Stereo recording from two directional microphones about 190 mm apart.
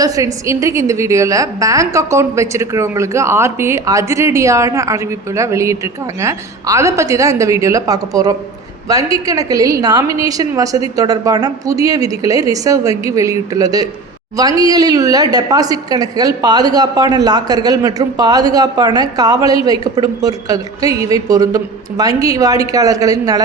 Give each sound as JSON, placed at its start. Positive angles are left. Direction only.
{"t": 0.0, "sound": "a woman's voice", "side_deg": -15}